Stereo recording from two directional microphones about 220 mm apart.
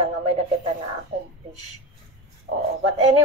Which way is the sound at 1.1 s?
30° right (ahead or behind).